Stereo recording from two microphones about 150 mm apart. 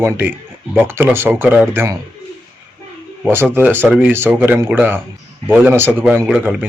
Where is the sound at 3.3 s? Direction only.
15° right (ahead or behind).